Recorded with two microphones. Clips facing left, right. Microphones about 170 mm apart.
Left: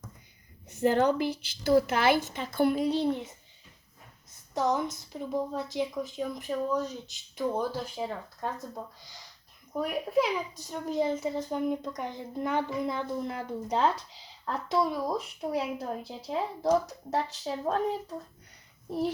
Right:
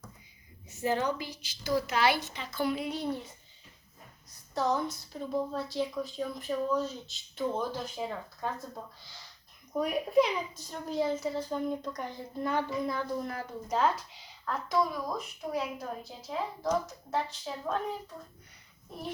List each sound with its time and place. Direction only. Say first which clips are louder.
0.7 s speech: left 6 dB; 60° left (ahead or behind)
2.8 s speech: left 7 dB; 30° left (ahead or behind)
4.5 s a woman's voice: left 2 dB; 20° left (ahead or behind)
9.7 s a child's voice: right 2 dB; centre (ahead or behind)
10.5 s speech: left 3 dB; 15° left (ahead or behind); by 17.7 s 35° left (ahead or behind)